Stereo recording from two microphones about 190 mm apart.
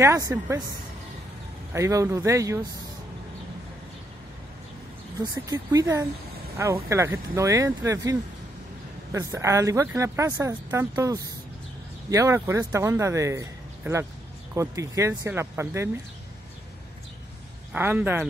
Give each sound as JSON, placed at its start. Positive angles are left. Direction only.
{"t": 0.0, "sound": "speech", "side_deg": -15}
{"t": 1.7, "sound": "speech", "side_deg": -15}
{"t": 5.2, "sound": "speech", "side_deg": -20}
{"t": 17.7, "sound": "speech", "side_deg": -10}